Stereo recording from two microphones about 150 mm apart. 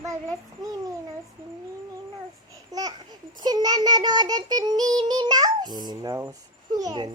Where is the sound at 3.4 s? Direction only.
25° right (ahead or behind).